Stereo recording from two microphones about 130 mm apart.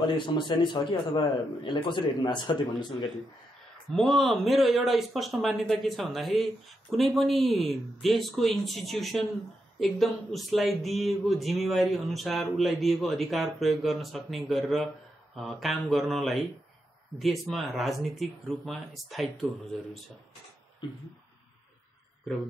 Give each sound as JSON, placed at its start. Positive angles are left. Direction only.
{"t": 0.0, "sound": "a man's voice", "side_deg": 35}
{"t": 3.9, "sound": "speech", "side_deg": 0}